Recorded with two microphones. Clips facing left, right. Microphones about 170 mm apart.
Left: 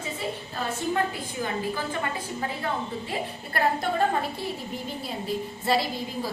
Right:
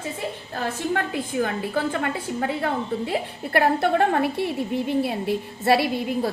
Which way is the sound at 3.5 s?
65° right (ahead or behind).